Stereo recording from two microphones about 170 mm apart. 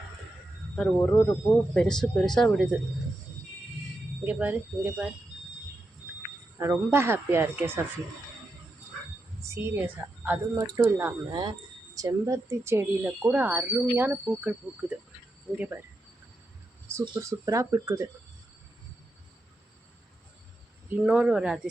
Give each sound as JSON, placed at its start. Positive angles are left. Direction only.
{"t": 0.9, "sound": "speech", "side_deg": 15}
{"t": 4.2, "sound": "speech", "side_deg": -10}
{"t": 6.6, "sound": "speech", "side_deg": -15}
{"t": 9.6, "sound": "speech", "side_deg": -10}
{"t": 17.2, "sound": "speech", "side_deg": -20}
{"t": 21.0, "sound": "speech", "side_deg": -5}